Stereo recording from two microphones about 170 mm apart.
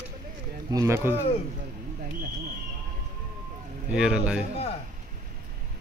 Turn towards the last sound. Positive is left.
turn(degrees=-5)  # may be behind; listen again after turning